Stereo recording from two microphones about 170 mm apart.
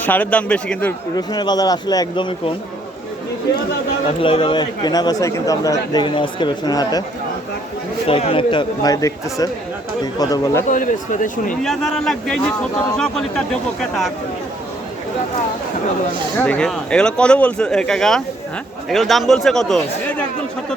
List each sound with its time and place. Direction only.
0.0 s a man's voice: 10° left (ahead or behind)
1.1 s speech: 25° left (ahead or behind)
4.2 s speech: 30° left (ahead or behind)
8.0 s speech: 35° left (ahead or behind)
10.7 s speech: 50° left (ahead or behind)
11.6 s speech: centre (ahead or behind)
16.4 s speech: 5° left (ahead or behind)